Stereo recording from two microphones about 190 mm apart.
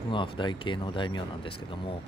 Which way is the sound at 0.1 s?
25° left (ahead or behind).